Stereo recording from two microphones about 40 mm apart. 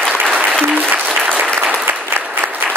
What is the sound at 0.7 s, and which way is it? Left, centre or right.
Applause, right.